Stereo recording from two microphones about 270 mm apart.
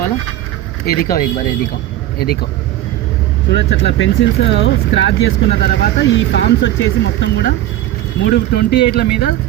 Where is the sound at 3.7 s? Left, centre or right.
Left.